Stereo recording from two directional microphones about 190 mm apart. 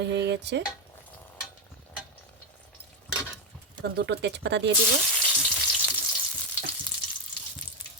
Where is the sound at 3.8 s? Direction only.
60° right (ahead or behind).